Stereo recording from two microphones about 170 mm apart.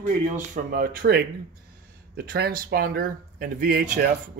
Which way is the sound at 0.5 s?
60° right (ahead or behind).